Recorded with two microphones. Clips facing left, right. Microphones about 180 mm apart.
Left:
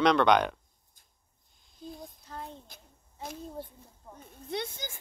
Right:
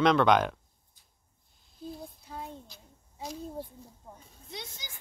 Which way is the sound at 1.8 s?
5° right (ahead or behind).